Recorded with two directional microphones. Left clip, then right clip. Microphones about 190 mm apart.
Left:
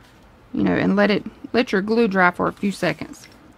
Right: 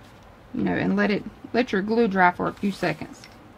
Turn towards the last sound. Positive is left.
turn(degrees=45)  # may be behind; listen again after turning